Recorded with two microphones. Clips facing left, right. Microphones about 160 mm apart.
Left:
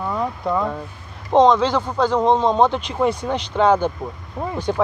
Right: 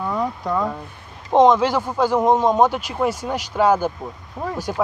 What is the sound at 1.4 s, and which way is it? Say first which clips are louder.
Speech: right 1 dB; 15° right (ahead or behind).